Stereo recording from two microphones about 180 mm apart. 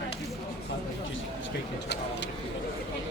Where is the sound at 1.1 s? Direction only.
90° left.